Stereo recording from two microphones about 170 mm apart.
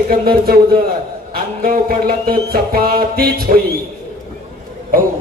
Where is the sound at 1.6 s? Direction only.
60° right (ahead or behind).